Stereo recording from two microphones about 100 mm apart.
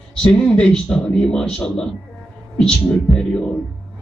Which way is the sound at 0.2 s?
10° left (ahead or behind).